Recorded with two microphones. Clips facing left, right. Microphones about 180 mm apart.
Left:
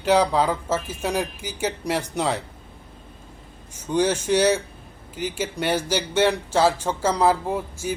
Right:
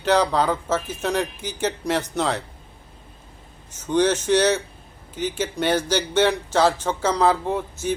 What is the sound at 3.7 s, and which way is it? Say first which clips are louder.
Speech: right 2 dB; 10° left (ahead or behind).